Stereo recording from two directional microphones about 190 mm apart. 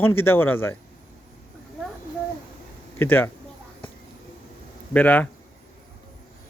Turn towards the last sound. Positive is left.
turn(degrees=10)  # may be behind; listen again after turning